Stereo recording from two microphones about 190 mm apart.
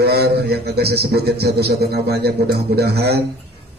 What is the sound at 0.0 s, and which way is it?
A man's voice, 60° right (ahead or behind).